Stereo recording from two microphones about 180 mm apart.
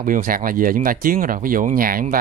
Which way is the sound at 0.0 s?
50° right (ahead or behind).